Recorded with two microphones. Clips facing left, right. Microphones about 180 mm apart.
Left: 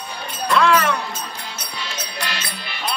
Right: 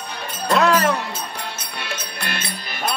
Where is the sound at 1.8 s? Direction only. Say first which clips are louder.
Left 1 dB; 55° right (ahead or behind).